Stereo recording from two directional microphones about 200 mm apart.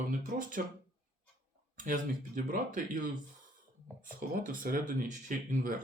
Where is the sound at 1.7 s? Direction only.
40° right (ahead or behind).